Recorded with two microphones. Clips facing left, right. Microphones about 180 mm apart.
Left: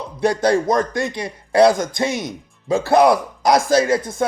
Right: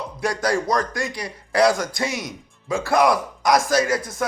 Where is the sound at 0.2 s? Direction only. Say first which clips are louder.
Left 6 dB; 25° left (ahead or behind).